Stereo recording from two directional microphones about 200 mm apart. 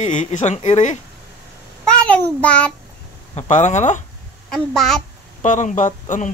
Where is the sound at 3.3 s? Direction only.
35° left (ahead or behind).